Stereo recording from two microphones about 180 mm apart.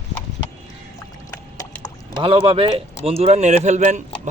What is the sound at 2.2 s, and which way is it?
A man's voice, 30° right (ahead or behind).